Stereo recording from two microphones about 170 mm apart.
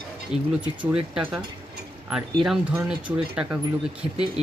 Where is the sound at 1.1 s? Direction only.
5° right (ahead or behind).